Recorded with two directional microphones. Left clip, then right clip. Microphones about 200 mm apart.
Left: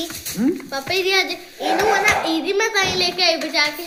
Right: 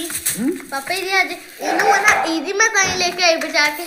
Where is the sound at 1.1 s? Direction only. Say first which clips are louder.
Right 2 dB; 65° left (ahead or behind).